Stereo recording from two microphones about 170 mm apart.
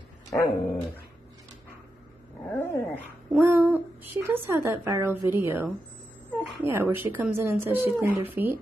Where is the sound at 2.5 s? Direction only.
10° left (ahead or behind).